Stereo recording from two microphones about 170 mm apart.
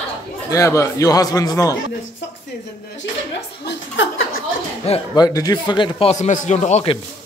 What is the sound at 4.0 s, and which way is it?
Speech, 90° left.